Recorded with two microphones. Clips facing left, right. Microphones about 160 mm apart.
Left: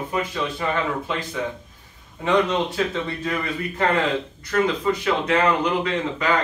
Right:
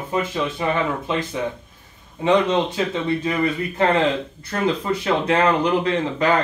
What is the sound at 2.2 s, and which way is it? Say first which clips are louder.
Speech: right 3 dB; 20° right (ahead or behind).